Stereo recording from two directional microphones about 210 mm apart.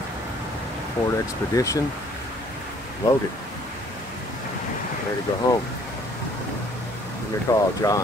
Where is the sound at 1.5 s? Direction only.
15° left (ahead or behind).